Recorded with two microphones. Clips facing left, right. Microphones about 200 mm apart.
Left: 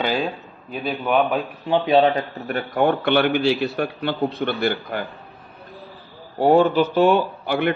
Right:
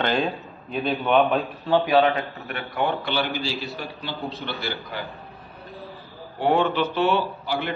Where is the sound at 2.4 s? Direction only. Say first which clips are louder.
Left 7 dB; 45° left (ahead or behind).